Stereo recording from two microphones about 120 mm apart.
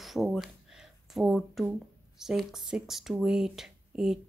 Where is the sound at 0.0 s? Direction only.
Centre (ahead or behind).